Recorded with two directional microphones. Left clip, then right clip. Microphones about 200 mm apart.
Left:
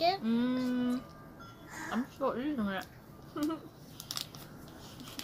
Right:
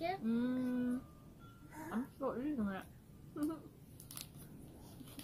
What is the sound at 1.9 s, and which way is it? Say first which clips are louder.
A woman's voice: left 7 dB; centre (ahead or behind).